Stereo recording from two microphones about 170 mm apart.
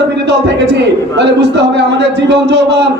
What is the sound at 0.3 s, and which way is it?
A man's voice, 90° right.